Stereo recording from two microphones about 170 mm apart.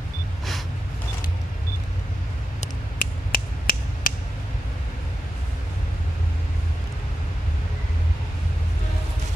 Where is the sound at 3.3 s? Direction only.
55° left (ahead or behind).